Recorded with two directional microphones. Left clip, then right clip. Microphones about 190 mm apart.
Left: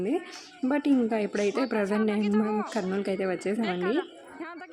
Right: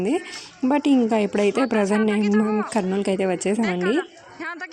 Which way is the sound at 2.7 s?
30° right (ahead or behind).